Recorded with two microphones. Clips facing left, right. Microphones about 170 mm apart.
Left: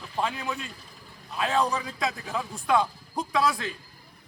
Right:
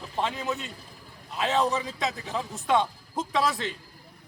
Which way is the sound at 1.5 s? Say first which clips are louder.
Right 1 dB; 25° right (ahead or behind).